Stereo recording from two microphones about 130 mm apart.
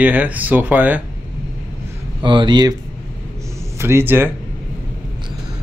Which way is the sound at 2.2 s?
40° right (ahead or behind).